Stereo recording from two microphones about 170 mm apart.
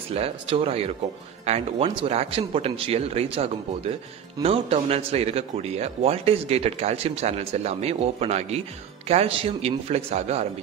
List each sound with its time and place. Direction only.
0.1 s speech: 35° right (ahead or behind)